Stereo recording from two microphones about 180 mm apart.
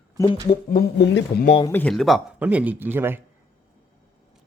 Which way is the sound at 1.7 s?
5° left (ahead or behind).